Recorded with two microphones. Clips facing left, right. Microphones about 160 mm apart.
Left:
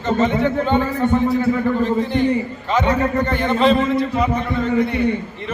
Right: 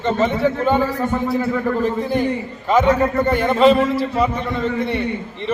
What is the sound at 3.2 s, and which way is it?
A man's voice, 10° right (ahead or behind).